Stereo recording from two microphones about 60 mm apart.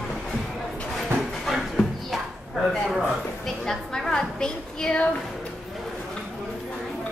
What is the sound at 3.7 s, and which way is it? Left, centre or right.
A woman's voice, centre.